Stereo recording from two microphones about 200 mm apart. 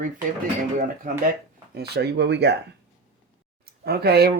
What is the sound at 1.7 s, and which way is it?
Speech, 55° right (ahead or behind).